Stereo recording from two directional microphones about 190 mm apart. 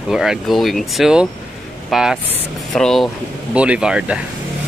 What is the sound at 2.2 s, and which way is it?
Speech, 30° right (ahead or behind).